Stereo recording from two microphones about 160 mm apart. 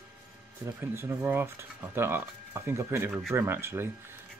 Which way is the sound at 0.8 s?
15° right (ahead or behind).